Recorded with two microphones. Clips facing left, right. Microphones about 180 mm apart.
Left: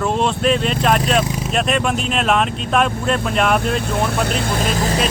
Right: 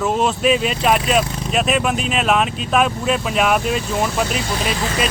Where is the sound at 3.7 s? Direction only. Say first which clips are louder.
Even; 60° left (ahead or behind).